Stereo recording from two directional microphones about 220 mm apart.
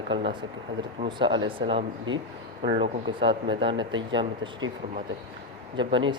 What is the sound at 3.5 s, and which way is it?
Speech, 20° right (ahead or behind).